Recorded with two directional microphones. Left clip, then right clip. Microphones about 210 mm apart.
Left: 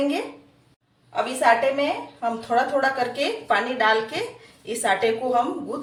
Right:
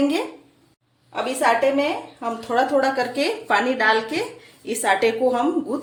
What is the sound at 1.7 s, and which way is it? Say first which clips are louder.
A woman's voice: right 2 dB; 40° right (ahead or behind).